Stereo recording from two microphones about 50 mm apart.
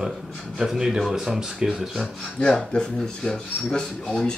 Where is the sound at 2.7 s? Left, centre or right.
Centre.